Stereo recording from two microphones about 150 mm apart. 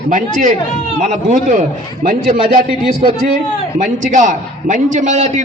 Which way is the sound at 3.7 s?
55° right (ahead or behind).